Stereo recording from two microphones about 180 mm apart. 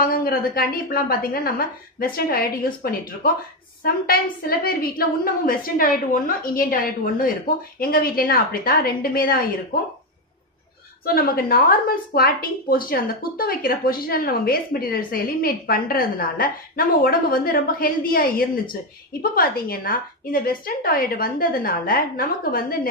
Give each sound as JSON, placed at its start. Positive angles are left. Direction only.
{"t": 0.0, "sound": "a woman's voice", "side_deg": 55}
{"t": 11.1, "sound": "a woman's voice", "side_deg": 55}